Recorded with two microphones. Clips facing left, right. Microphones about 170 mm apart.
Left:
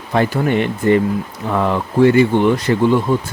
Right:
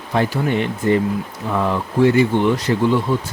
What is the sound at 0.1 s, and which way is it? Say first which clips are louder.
Speech: left 3 dB; 60° left (ahead or behind).